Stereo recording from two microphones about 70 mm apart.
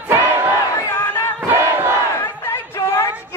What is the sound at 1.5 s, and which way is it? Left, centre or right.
Crowd, right.